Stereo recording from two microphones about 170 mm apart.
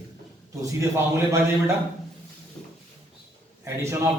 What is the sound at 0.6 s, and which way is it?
A man's voice, 15° right (ahead or behind).